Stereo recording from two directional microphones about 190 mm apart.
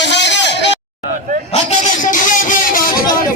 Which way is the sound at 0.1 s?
65° left (ahead or behind).